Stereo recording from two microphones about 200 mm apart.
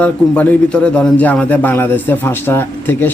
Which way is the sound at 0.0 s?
5° left (ahead or behind).